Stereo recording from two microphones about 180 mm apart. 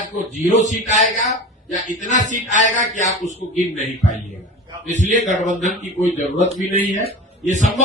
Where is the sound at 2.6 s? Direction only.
45° left (ahead or behind).